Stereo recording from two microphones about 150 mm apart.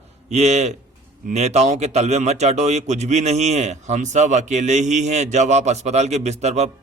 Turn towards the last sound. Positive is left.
turn(degrees=-45)  # may be behind; listen again after turning